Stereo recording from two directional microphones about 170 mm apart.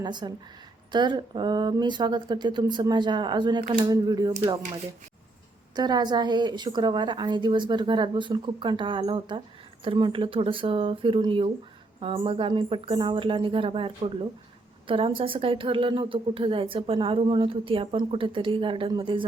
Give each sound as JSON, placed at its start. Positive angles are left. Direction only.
{"t": 0.0, "sound": "a woman's voice", "side_deg": -25}
{"t": 5.7, "sound": "a woman's voice", "side_deg": -25}